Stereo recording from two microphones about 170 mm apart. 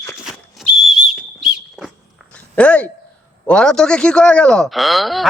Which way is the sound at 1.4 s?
Centre (ahead or behind).